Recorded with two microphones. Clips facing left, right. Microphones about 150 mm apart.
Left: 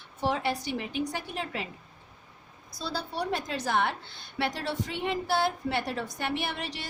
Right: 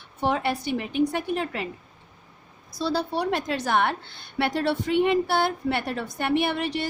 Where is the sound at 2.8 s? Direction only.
75° right (ahead or behind).